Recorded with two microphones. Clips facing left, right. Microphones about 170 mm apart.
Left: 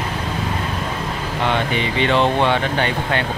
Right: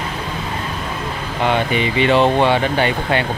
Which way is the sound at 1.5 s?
10° right (ahead or behind).